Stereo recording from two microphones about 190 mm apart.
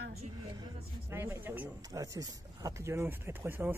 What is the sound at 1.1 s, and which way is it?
Speech, 15° right (ahead or behind).